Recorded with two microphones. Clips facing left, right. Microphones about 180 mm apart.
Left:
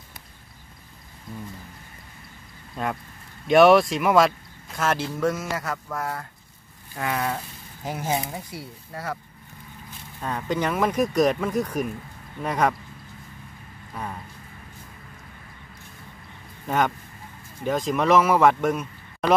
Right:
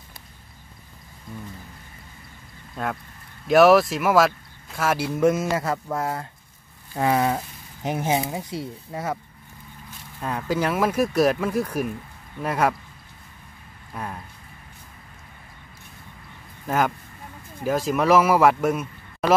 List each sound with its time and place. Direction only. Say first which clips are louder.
2.7 s speech: even; centre (ahead or behind); by 9.2 s 20° right (ahead or behind)
10.2 s speech: right 1 dB; 5° right (ahead or behind)
16.6 s speech: right 1 dB; 5° right (ahead or behind)